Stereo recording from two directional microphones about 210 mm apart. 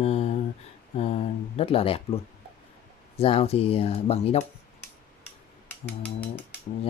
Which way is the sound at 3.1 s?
30° left (ahead or behind).